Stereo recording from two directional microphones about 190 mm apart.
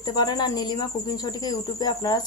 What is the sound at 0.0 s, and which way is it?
Speech, 20° left (ahead or behind).